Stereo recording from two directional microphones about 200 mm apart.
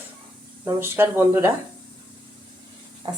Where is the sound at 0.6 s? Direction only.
10° right (ahead or behind).